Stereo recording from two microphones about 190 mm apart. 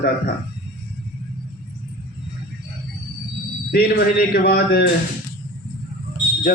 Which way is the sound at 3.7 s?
55° left (ahead or behind).